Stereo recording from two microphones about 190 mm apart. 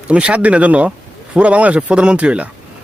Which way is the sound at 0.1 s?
5° right (ahead or behind).